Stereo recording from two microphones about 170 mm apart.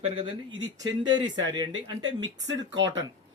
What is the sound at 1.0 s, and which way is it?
Speech, 25° right (ahead or behind).